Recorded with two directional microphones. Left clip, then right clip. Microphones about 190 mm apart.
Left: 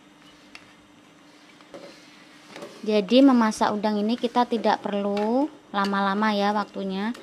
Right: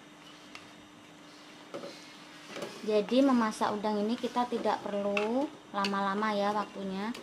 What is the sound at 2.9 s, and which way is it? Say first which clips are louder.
Speech: left 8 dB; 40° left (ahead or behind).